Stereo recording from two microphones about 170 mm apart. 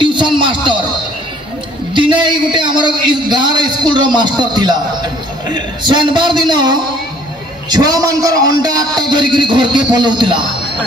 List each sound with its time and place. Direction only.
0.0 s speech: 30° right (ahead or behind)
2.0 s a man's voice: 30° right (ahead or behind)